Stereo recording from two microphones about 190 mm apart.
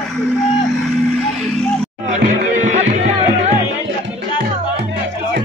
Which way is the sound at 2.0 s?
40° right (ahead or behind).